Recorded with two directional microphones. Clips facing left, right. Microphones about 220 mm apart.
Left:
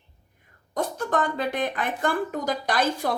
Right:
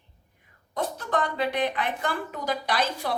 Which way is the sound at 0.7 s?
45° left (ahead or behind).